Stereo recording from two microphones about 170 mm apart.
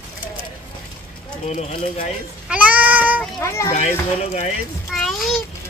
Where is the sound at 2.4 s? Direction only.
10° right (ahead or behind).